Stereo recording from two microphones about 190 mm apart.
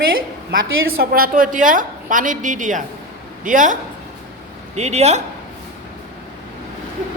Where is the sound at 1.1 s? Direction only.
50° right (ahead or behind).